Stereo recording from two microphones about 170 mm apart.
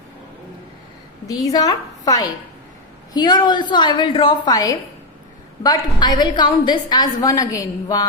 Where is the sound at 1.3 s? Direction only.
20° left (ahead or behind).